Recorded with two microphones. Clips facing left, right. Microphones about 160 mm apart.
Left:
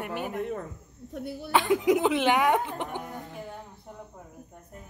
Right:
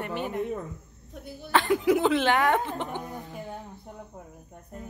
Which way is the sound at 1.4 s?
15° left (ahead or behind).